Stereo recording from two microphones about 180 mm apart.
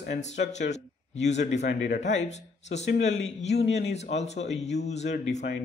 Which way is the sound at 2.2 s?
40° left (ahead or behind).